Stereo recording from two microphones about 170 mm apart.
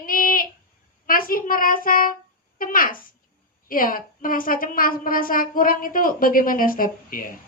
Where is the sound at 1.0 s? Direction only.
55° left (ahead or behind).